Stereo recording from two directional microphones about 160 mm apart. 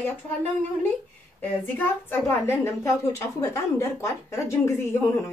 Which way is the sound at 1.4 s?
10° left (ahead or behind).